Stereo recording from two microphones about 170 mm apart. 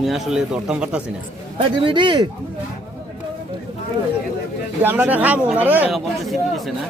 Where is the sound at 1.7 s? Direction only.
30° right (ahead or behind).